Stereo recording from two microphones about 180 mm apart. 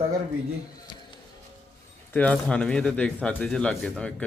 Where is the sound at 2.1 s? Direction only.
5° left (ahead or behind).